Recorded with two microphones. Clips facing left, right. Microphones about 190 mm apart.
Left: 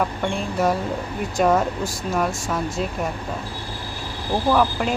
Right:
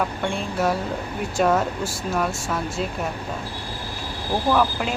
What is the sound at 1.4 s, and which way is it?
Speech, centre (ahead or behind).